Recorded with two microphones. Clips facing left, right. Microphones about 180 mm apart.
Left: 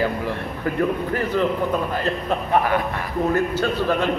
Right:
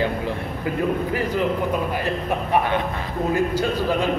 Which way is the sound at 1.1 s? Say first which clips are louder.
Left 1 dB; 10° right (ahead or behind).